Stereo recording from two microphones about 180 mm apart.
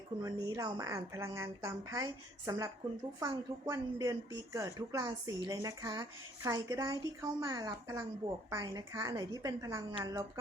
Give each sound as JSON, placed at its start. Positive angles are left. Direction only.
{"t": 0.2, "sound": "a woman's voice", "side_deg": -20}